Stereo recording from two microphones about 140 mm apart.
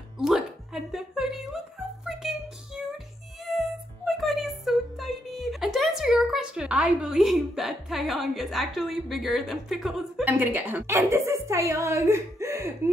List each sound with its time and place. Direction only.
0.2 s a sound: 5° right (ahead or behind)
2.0 s child singing: 5° right (ahead or behind)
3.4 s music: centre (ahead or behind)
10.2 s a woman's voice: 15° right (ahead or behind)